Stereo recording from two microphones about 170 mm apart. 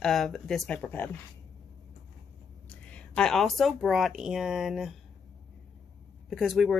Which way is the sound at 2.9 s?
5° left (ahead or behind).